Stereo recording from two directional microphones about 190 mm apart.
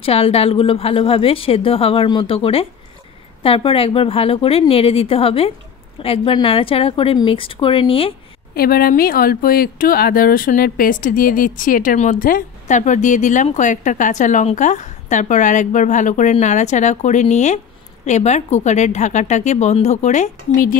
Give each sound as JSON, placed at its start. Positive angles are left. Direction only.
{"t": 0.0, "sound": "a woman's voice", "side_deg": 30}
{"t": 8.5, "sound": "speech", "side_deg": 50}